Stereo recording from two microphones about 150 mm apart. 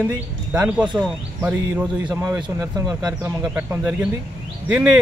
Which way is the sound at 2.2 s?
25° right (ahead or behind).